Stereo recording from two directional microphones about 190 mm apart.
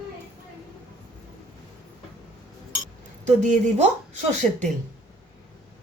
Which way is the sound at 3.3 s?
40° right (ahead or behind).